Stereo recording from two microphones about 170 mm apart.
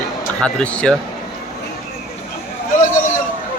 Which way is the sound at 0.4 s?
5° left (ahead or behind).